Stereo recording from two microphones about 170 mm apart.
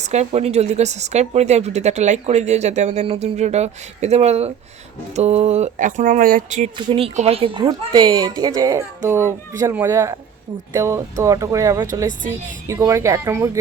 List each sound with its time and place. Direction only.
0.0 s a woman's voice: 40° right (ahead or behind)
6.7 s a woman's voice: 35° right (ahead or behind); by 13.6 s 15° right (ahead or behind)